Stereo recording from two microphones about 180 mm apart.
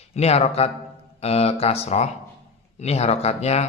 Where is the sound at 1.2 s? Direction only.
35° left (ahead or behind).